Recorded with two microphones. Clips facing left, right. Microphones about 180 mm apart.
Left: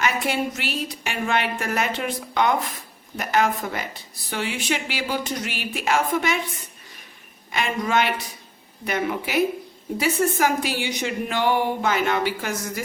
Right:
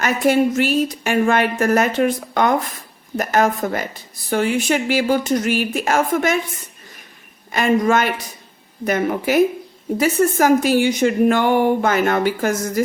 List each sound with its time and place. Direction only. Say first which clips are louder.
0.0 s a woman's voice: right 8 dB; 45° right (ahead or behind)
7.5 s a woman's voice: right 7 dB; 45° right (ahead or behind)